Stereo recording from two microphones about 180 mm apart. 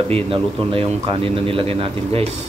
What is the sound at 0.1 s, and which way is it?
Speech, 30° right (ahead or behind).